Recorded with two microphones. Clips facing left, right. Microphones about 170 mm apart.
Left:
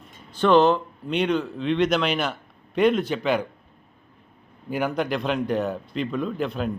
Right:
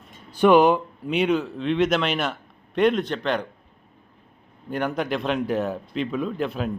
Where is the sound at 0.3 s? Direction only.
10° right (ahead or behind); by 3.4 s 5° left (ahead or behind).